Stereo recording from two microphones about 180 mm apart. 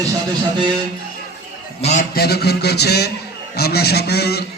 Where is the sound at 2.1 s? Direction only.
65° left (ahead or behind).